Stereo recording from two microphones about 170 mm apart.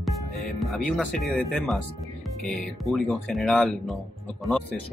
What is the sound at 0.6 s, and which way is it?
Speech, centre (ahead or behind).